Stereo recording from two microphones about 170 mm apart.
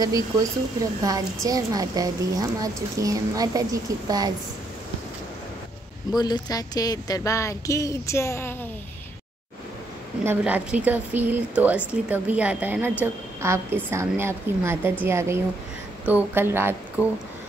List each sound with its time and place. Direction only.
0.0 s a woman's voice: 20° right (ahead or behind)
6.1 s speech: 25° left (ahead or behind)
10.2 s speech: 10° right (ahead or behind)
17.0 s speech: 15° left (ahead or behind)